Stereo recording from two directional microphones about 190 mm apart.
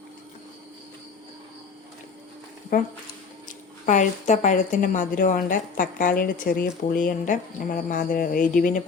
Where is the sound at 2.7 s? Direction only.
45° left (ahead or behind).